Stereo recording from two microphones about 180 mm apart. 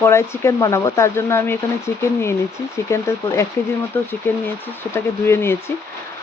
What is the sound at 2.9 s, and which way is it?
Speech, 15° left (ahead or behind).